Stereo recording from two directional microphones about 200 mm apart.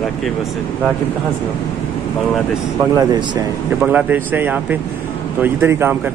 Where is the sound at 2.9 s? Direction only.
20° right (ahead or behind).